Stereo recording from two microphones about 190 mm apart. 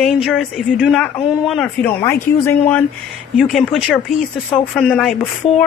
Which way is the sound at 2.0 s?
15° left (ahead or behind).